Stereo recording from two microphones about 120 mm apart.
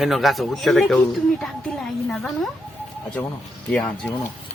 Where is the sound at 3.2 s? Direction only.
10° left (ahead or behind).